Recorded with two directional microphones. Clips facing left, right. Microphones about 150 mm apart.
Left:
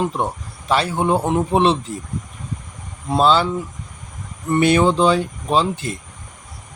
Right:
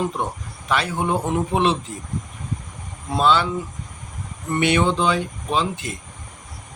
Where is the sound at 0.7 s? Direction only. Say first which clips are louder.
Left 4 dB; 30° left (ahead or behind).